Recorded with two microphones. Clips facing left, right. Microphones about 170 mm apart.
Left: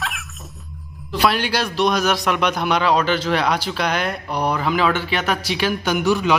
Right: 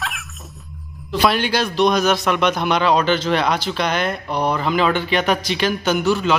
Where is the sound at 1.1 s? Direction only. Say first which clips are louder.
Right 1 dB; 5° left (ahead or behind).